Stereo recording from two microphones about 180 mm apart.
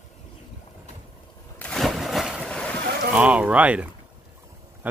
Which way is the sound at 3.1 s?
5° right (ahead or behind).